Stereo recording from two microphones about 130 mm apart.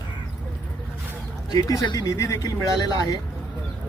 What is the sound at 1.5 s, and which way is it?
A man's voice, 30° left (ahead or behind).